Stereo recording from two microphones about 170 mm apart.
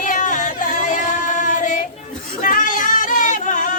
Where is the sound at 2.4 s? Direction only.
50° left (ahead or behind).